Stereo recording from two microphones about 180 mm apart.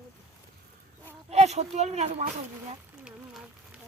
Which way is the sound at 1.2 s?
40° right (ahead or behind).